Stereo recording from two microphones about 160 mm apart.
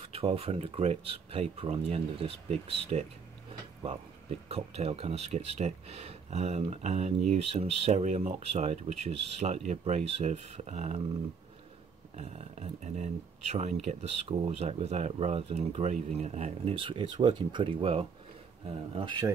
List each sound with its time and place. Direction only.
0.0 s speech: 35° right (ahead or behind)
4.5 s speech: 40° right (ahead or behind)
12.2 s speech: 45° right (ahead or behind)